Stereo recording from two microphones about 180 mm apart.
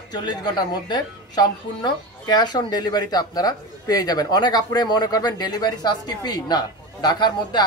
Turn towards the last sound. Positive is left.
turn(degrees=25)  # may be behind; listen again after turning